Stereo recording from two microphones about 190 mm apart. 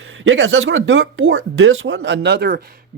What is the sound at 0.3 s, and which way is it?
Speech, 90° right.